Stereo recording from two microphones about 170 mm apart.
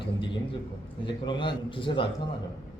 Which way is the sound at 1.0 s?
25° left (ahead or behind).